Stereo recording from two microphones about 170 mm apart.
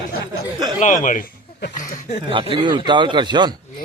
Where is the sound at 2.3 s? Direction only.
30° right (ahead or behind).